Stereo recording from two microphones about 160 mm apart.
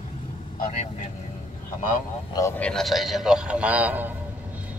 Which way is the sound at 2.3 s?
20° left (ahead or behind).